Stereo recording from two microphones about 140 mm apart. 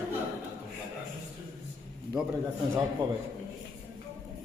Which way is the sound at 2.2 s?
5° right (ahead or behind).